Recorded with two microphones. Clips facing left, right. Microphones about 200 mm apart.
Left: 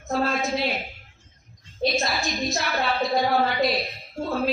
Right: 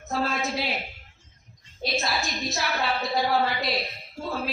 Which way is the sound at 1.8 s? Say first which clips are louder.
Left 4 dB; centre (ahead or behind).